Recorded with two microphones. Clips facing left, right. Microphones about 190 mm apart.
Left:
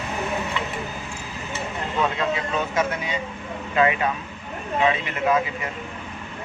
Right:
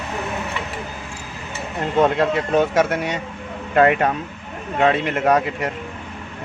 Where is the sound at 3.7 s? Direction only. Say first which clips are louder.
Right 5 dB; 55° right (ahead or behind).